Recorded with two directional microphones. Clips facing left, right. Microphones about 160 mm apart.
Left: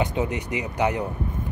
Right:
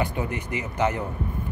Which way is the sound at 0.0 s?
20° left (ahead or behind).